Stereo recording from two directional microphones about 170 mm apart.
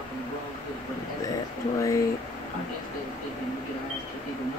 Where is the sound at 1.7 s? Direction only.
20° left (ahead or behind).